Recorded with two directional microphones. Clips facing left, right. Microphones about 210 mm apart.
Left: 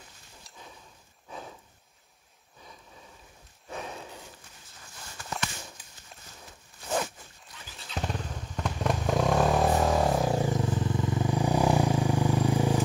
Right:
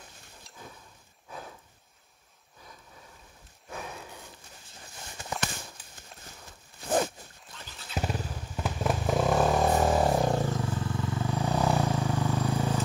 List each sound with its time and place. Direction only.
5.2 s a sound: 20° right (ahead or behind)
7.9 s motorcycle: 5° right (ahead or behind)
10.4 s vehicle: 15° left (ahead or behind)